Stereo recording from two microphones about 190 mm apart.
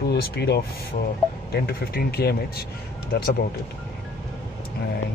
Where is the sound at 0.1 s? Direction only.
60° left (ahead or behind).